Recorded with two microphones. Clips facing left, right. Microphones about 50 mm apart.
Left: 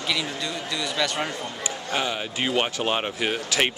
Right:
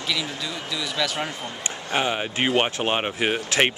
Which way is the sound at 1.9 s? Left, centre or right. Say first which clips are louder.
Right 4 dB; right.